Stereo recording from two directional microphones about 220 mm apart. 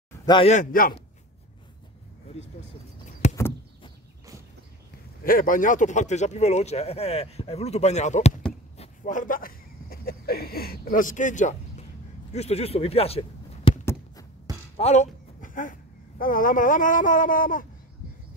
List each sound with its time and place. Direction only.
0.3 s speech: 30° left (ahead or behind)
3.1 s a sound: 35° left (ahead or behind)
5.2 s speech: 40° left (ahead or behind)
14.8 s speech: 30° left (ahead or behind)